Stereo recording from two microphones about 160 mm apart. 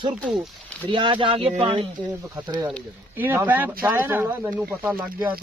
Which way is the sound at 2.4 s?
20° right (ahead or behind).